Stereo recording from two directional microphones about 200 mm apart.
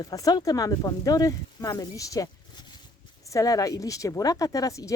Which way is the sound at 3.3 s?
15° left (ahead or behind).